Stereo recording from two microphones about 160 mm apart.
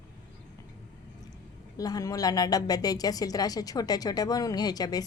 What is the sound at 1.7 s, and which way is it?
A woman's voice, 25° left (ahead or behind).